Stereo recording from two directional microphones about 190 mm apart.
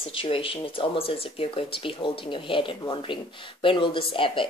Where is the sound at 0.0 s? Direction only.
30° left (ahead or behind).